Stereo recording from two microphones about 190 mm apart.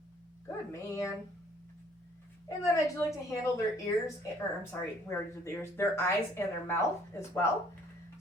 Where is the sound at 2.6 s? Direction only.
15° left (ahead or behind).